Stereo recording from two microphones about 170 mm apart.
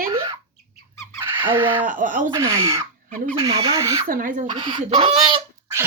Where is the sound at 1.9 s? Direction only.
50° right (ahead or behind).